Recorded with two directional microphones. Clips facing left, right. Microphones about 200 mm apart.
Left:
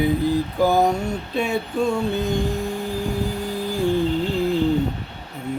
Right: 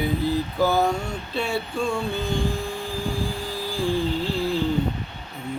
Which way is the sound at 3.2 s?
20° left (ahead or behind).